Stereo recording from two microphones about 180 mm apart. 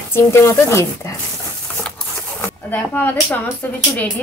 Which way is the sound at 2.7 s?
10° left (ahead or behind).